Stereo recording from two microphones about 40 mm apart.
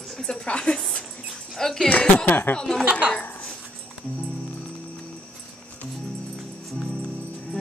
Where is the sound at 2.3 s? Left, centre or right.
Left.